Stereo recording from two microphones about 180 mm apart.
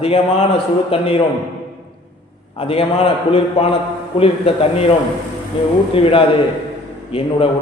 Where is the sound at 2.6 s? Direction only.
30° left (ahead or behind).